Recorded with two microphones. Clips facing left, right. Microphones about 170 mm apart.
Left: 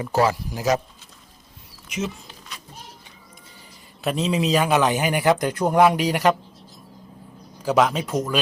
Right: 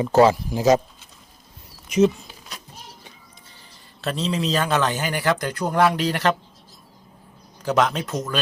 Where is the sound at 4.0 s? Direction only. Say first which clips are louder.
Left 2 dB; 15° left (ahead or behind).